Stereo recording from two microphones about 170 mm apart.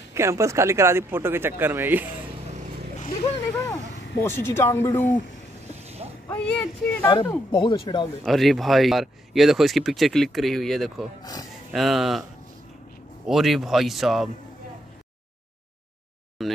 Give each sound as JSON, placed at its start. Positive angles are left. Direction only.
{"t": 0.1, "sound": "speech", "side_deg": -15}
{"t": 3.0, "sound": "vehicle", "side_deg": 45}
{"t": 4.2, "sound": "speech", "side_deg": 15}
{"t": 6.3, "sound": "speech", "side_deg": 5}
{"t": 7.5, "sound": "speech", "side_deg": 25}
{"t": 8.3, "sound": "speech", "side_deg": 0}
{"t": 13.3, "sound": "speech", "side_deg": 0}
{"t": 16.4, "sound": "speech", "side_deg": 0}